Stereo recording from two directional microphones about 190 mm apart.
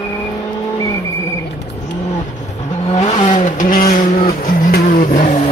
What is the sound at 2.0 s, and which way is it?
Vehicle, 35° left (ahead or behind).